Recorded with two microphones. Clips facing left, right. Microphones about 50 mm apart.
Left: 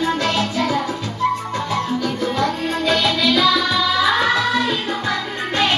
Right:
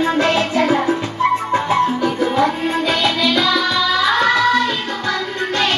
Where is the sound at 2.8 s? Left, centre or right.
Centre.